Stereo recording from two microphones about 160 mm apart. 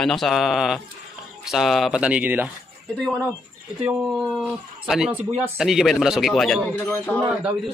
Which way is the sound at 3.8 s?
5° right (ahead or behind).